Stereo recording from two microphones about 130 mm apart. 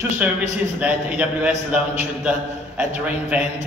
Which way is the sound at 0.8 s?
10° right (ahead or behind).